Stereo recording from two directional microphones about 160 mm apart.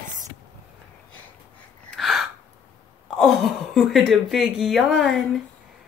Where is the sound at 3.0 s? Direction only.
Centre (ahead or behind).